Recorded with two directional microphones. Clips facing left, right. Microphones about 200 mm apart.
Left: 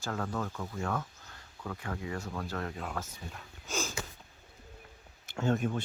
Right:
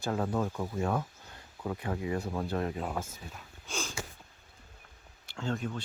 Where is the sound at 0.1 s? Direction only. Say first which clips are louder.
Right 4 dB; 20° right (ahead or behind).